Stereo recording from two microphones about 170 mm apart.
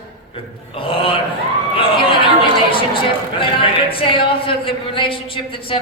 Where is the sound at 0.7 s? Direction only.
30° left (ahead or behind).